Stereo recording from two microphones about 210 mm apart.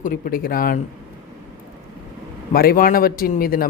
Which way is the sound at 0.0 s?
40° left (ahead or behind).